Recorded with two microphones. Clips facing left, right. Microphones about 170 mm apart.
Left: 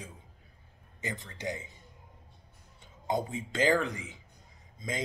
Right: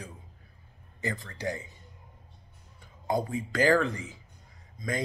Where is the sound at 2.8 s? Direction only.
20° left (ahead or behind).